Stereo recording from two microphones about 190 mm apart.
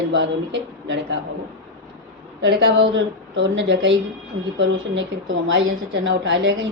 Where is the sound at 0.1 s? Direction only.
75° right (ahead or behind).